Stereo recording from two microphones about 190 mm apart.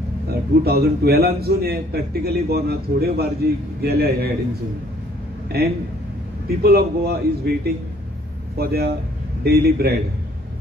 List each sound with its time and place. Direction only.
0.3 s a man's voice: 55° right (ahead or behind)
5.5 s a man's voice: 55° right (ahead or behind)